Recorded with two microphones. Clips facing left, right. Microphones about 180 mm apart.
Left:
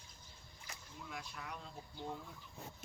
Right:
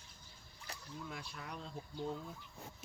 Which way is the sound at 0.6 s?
35° right (ahead or behind).